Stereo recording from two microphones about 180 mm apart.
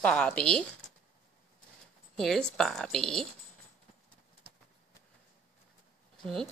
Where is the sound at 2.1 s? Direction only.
5° left (ahead or behind).